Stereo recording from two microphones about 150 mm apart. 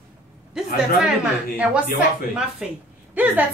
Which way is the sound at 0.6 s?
5° right (ahead or behind).